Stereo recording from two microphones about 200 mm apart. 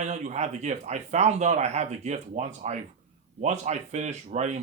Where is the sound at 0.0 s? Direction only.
35° right (ahead or behind).